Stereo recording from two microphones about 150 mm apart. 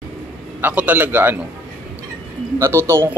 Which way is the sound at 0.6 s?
10° right (ahead or behind).